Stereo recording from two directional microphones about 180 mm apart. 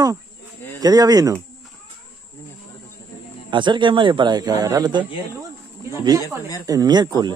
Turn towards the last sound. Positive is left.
turn(degrees=-20)  # may be behind; listen again after turning